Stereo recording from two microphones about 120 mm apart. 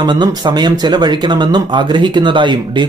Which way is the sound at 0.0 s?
35° right (ahead or behind).